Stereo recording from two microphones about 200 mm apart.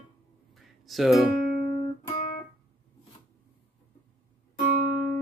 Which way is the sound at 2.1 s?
35° left (ahead or behind).